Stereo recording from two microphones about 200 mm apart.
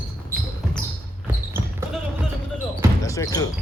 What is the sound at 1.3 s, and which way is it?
Basketball bounce, 10° right (ahead or behind).